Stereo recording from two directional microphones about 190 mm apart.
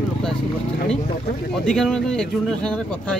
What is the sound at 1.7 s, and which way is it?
Speech, 5° left (ahead or behind).